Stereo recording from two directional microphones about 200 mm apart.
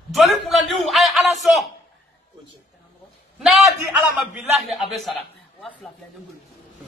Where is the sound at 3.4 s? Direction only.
5° right (ahead or behind).